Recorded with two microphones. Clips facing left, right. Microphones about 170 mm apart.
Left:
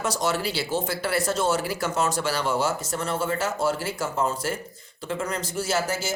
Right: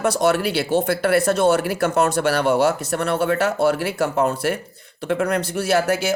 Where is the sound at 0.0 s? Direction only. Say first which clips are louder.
Right 7 dB; 60° right (ahead or behind).